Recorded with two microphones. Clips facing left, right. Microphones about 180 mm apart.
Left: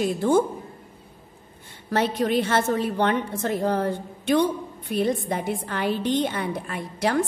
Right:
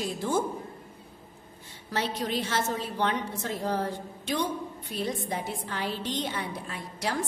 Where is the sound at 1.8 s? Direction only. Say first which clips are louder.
Left 8 dB; 55° left (ahead or behind).